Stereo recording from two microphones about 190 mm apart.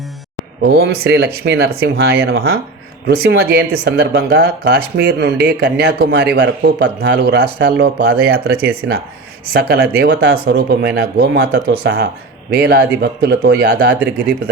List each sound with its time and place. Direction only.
0.8 s speech: 55° right (ahead or behind)
8.8 s speech: 65° right (ahead or behind)
9.5 s speech: 55° right (ahead or behind)